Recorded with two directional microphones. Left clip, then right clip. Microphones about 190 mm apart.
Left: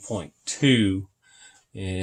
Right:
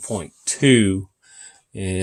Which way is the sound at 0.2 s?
45° right (ahead or behind).